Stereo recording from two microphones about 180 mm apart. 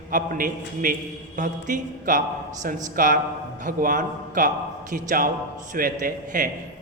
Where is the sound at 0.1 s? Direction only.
50° right (ahead or behind).